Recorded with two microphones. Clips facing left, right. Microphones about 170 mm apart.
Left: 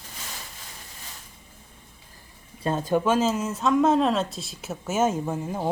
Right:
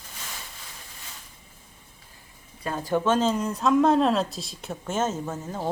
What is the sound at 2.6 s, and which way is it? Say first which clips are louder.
Speech: left 3 dB; 20° left (ahead or behind).